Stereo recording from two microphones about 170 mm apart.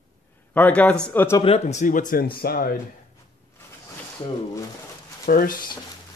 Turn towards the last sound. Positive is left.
turn(degrees=55)  # may be behind; listen again after turning